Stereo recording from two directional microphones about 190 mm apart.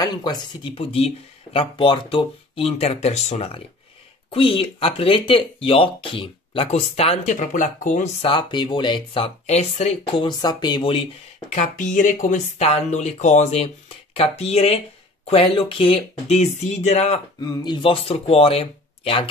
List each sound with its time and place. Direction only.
0.0 s speech: 20° left (ahead or behind)
10.2 s speech: 20° left (ahead or behind)
11.5 s speech: 40° left (ahead or behind)
17.4 s speech: 20° left (ahead or behind)